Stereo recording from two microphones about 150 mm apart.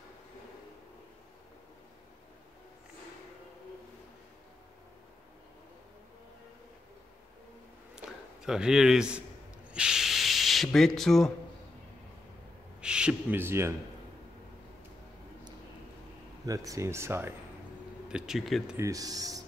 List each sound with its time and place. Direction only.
7.9 s a sound: 5° right (ahead or behind)
9.7 s hiss: 5° right (ahead or behind)
12.8 s a man's voice: 5° right (ahead or behind)
16.4 s speech: 20° right (ahead or behind)
18.0 s speech: 5° right (ahead or behind)
18.8 s speech: 25° right (ahead or behind)